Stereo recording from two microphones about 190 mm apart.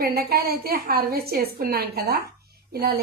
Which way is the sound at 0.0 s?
55° right (ahead or behind).